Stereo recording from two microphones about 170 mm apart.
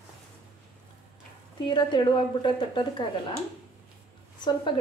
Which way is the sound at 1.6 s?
25° left (ahead or behind).